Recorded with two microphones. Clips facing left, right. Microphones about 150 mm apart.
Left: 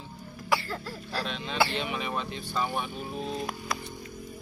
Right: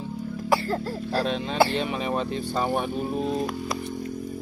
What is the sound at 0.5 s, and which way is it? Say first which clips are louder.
Speech: right 6 dB; 40° right (ahead or behind).